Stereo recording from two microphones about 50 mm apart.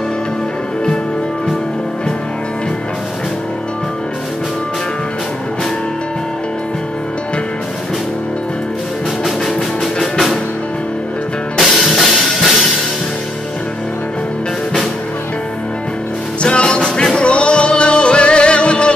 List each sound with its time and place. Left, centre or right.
11.8 s music: centre
16.4 s music: left